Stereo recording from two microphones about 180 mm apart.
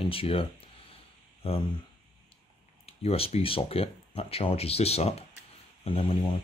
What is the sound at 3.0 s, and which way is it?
Speech, 35° left (ahead or behind).